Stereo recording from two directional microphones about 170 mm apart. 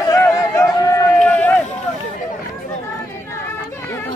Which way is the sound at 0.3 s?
20° left (ahead or behind).